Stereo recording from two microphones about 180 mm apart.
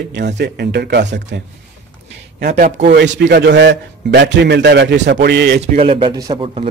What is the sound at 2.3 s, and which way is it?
A man's voice, 60° right (ahead or behind).